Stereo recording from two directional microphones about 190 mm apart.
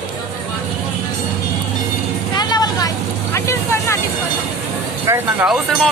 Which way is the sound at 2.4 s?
20° left (ahead or behind).